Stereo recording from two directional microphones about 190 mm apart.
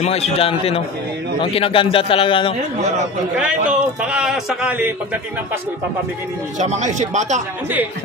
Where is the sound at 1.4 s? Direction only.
30° left (ahead or behind).